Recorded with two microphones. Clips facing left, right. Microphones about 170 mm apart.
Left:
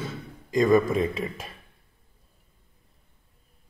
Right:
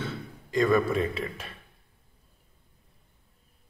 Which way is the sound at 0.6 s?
20° left (ahead or behind).